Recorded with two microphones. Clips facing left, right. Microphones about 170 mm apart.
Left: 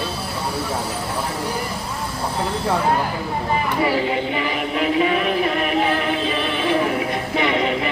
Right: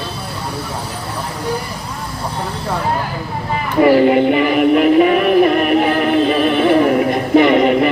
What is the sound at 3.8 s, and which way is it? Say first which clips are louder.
Synthetic singing: right 15 dB; 60° right (ahead or behind).